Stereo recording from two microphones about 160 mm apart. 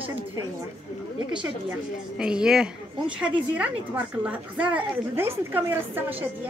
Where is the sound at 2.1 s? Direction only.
5° right (ahead or behind).